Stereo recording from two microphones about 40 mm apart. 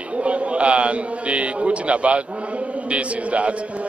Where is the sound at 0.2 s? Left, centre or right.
Right.